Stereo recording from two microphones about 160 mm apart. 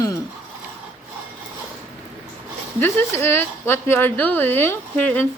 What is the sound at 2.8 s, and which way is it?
A woman's voice, 15° left (ahead or behind).